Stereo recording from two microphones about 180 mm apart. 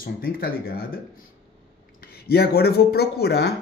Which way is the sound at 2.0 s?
60° left (ahead or behind).